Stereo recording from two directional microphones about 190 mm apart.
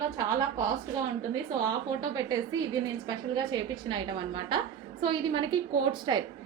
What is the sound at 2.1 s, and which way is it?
A woman's voice, 20° right (ahead or behind).